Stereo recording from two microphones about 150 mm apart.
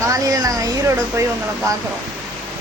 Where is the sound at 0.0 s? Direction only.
25° right (ahead or behind).